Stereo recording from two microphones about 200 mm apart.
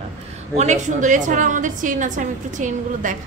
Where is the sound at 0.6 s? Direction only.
35° right (ahead or behind).